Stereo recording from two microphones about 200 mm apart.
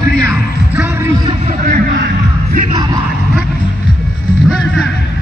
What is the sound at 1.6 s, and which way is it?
Music, 45° right (ahead or behind).